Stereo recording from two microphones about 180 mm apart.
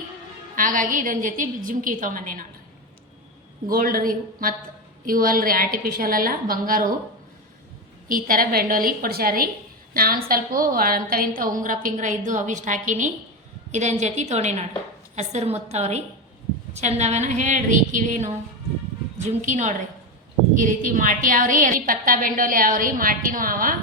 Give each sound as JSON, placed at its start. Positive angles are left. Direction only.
{"t": 0.5, "sound": "a woman's voice", "side_deg": -50}
{"t": 3.7, "sound": "a woman's voice", "side_deg": -50}
{"t": 8.0, "sound": "a woman's voice", "side_deg": -50}